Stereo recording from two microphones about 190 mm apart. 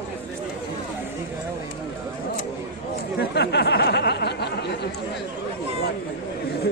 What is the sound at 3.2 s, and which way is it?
Speech, 60° left (ahead or behind).